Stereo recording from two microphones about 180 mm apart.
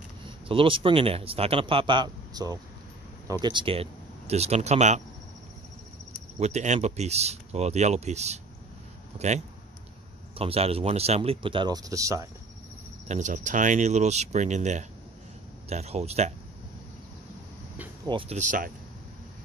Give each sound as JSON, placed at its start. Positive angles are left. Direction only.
{"t": 0.5, "sound": "speech", "side_deg": -30}
{"t": 6.4, "sound": "speech", "side_deg": -40}
{"t": 13.1, "sound": "speech", "side_deg": -45}
{"t": 18.0, "sound": "speech", "side_deg": -30}